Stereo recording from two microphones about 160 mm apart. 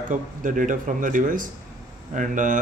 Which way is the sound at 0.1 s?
55° right (ahead or behind).